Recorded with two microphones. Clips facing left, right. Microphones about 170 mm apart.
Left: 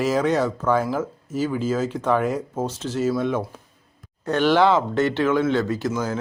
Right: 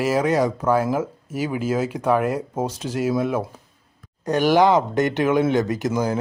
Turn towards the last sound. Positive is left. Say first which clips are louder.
# right 2 dB
turn(degrees=-15)  # may be behind; listen again after turning